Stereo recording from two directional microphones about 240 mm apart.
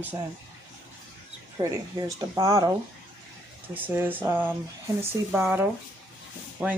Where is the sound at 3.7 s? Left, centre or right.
Centre.